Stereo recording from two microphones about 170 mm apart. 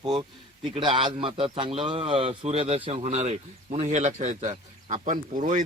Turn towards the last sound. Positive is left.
turn(degrees=-50)  # may be behind; listen again after turning